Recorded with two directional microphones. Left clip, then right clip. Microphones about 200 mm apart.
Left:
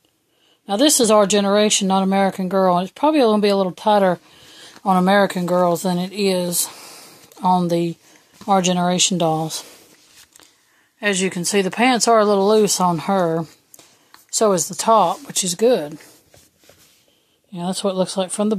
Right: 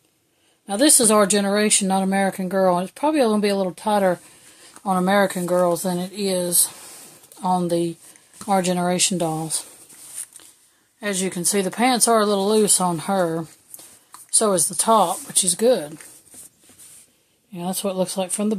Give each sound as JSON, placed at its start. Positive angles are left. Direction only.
{"t": 0.7, "sound": "speech", "side_deg": 40}
{"t": 11.0, "sound": "speech", "side_deg": 35}
{"t": 17.5, "sound": "speech", "side_deg": 35}